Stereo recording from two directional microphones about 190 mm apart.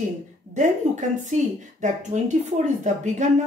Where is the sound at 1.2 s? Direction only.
40° right (ahead or behind).